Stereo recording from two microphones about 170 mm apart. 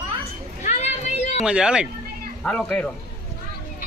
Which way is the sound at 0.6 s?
40° left (ahead or behind).